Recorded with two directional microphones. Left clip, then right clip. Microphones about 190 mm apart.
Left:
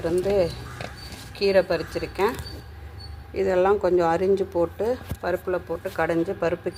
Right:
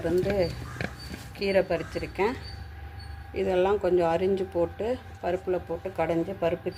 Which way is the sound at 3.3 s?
Centre (ahead or behind).